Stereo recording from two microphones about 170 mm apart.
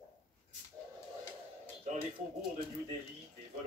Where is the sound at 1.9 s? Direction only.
40° right (ahead or behind).